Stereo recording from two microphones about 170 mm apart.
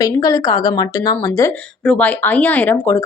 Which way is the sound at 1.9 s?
10° left (ahead or behind).